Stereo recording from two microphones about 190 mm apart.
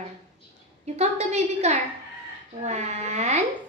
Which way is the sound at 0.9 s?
35° right (ahead or behind).